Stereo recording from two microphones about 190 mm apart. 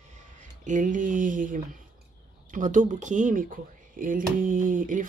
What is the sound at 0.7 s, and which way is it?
Speech, 45° right (ahead or behind).